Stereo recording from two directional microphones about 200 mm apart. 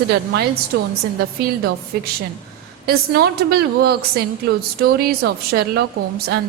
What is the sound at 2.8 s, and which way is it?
A woman's voice, 50° right (ahead or behind).